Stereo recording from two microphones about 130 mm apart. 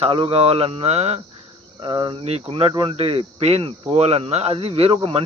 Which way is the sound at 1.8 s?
40° right (ahead or behind).